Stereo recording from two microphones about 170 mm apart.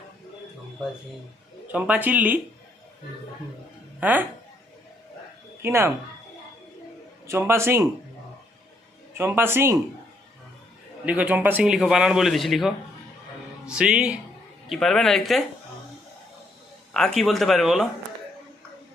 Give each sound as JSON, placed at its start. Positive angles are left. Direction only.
{"t": 1.6, "sound": "speech", "side_deg": -10}
{"t": 4.0, "sound": "speech", "side_deg": -10}
{"t": 5.6, "sound": "speech", "side_deg": -15}
{"t": 7.3, "sound": "speech", "side_deg": -15}
{"t": 9.1, "sound": "speech", "side_deg": -15}
{"t": 11.0, "sound": "a man's voice", "side_deg": -10}
{"t": 16.9, "sound": "a man's voice", "side_deg": 5}